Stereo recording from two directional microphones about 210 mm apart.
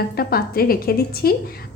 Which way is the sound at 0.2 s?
45° left (ahead or behind).